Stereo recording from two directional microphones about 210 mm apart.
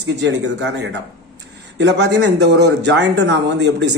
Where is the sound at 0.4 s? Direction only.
55° right (ahead or behind).